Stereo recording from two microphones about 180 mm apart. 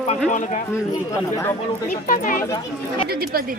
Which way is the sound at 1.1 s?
10° left (ahead or behind).